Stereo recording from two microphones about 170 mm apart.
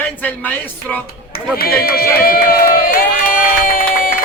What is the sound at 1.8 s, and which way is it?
Crowd, 65° left (ahead or behind).